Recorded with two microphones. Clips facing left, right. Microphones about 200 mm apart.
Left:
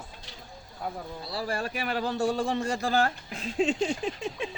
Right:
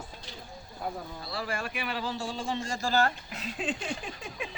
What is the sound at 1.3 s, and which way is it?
Speech, 35° left (ahead or behind).